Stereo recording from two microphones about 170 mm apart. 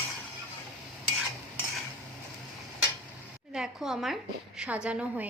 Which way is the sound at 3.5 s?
Centre (ahead or behind).